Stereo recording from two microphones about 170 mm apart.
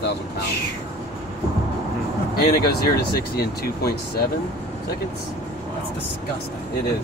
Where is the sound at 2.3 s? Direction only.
65° left (ahead or behind).